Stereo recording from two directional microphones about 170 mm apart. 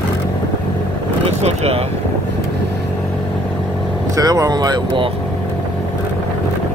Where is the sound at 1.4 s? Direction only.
40° right (ahead or behind).